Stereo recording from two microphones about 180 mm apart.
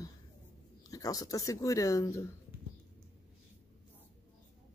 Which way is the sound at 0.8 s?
20° left (ahead or behind).